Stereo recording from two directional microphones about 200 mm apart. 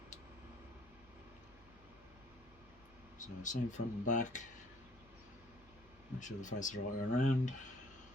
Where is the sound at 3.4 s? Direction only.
40° left (ahead or behind).